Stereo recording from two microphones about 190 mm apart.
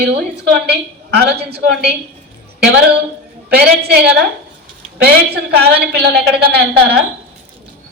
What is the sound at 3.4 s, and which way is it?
A woman's voice, 55° right (ahead or behind).